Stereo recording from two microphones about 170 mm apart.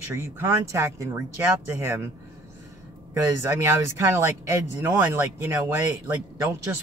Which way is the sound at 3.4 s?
15° right (ahead or behind).